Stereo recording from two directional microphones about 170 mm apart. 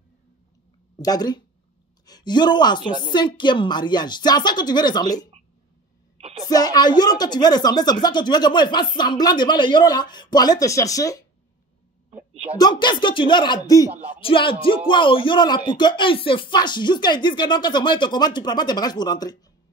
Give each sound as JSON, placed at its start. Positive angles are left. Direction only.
{"t": 0.9, "sound": "speech", "side_deg": 25}
{"t": 6.1, "sound": "a sound", "side_deg": -35}
{"t": 6.5, "sound": "speech", "side_deg": 20}
{"t": 12.5, "sound": "speech", "side_deg": 25}
{"t": 13.8, "sound": "speech", "side_deg": -40}
{"t": 14.1, "sound": "music", "side_deg": 30}
{"t": 14.9, "sound": "speech", "side_deg": 30}